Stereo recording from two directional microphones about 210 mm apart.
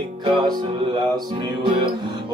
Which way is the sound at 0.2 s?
20° right (ahead or behind).